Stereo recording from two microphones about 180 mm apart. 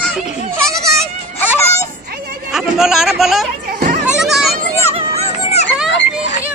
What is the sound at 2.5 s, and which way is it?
Speech, centre (ahead or behind).